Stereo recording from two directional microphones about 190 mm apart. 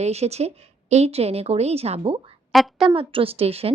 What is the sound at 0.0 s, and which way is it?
A woman's voice, 35° right (ahead or behind).